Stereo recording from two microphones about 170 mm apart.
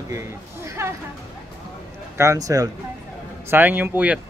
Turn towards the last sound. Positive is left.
turn(degrees=-10)  # may be behind; listen again after turning